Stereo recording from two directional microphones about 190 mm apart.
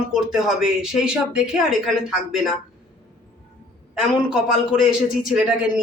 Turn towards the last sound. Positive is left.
turn(degrees=-5)  # may be behind; listen again after turning